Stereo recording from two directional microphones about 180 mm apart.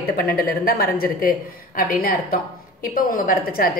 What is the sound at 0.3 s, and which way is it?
A woman's voice, 55° left (ahead or behind).